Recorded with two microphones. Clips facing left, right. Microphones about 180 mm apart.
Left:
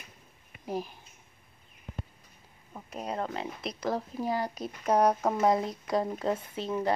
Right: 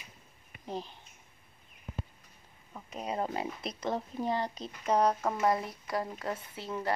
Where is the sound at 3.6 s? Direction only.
Centre (ahead or behind).